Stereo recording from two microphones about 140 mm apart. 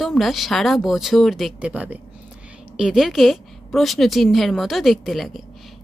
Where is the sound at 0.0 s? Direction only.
Centre (ahead or behind).